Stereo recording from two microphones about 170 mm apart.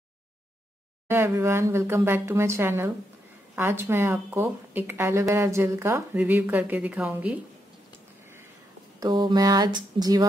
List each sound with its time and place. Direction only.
1.0 s speech: 15° right (ahead or behind)
9.0 s speech: 25° right (ahead or behind)